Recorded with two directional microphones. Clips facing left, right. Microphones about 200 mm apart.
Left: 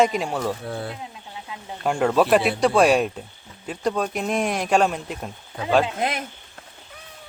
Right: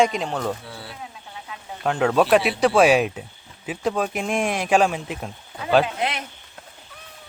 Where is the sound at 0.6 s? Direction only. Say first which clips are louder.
Left 9 dB; 50° left (ahead or behind).